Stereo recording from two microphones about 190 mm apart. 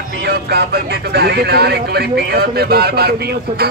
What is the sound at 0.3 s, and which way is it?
Music, 55° right (ahead or behind).